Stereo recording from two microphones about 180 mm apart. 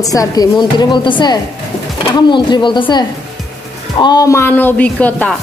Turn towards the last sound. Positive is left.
turn(degrees=10)  # may be behind; listen again after turning